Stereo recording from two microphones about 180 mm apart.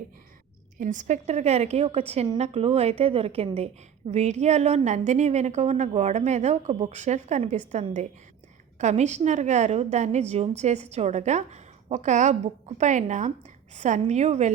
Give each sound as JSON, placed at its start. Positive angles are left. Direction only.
{"t": 0.8, "sound": "a woman's voice", "side_deg": -45}